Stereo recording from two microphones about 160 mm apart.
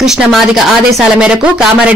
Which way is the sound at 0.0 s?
Centre (ahead or behind).